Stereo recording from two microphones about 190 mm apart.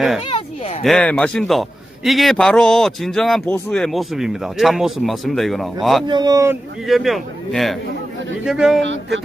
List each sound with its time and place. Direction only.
0.3 s a sound: 30° left (ahead or behind)
0.9 s speech: 5° left (ahead or behind)
6.1 s speech: 20° right (ahead or behind)
6.8 s speech: centre (ahead or behind)
8.8 s speech: 75° right (ahead or behind)